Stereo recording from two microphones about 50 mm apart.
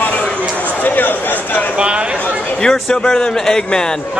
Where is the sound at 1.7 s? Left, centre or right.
Centre.